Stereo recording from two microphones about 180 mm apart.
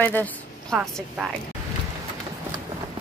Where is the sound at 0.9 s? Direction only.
Centre (ahead or behind).